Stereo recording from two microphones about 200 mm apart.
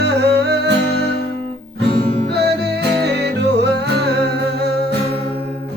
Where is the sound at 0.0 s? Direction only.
55° right (ahead or behind).